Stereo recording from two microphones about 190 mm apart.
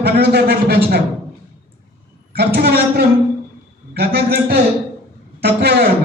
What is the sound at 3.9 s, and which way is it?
A man's voice, 55° right (ahead or behind).